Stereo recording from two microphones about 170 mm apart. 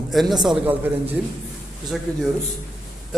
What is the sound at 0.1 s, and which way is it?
A man's voice, centre (ahead or behind).